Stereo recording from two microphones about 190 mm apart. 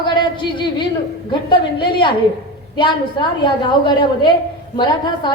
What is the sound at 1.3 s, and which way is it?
A woman's voice, 25° left (ahead or behind).